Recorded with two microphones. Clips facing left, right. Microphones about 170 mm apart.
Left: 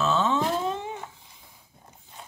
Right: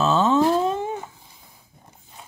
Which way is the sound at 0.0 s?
40° right (ahead or behind).